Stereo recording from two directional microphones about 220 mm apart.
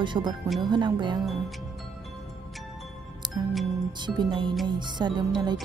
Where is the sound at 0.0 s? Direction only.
20° right (ahead or behind).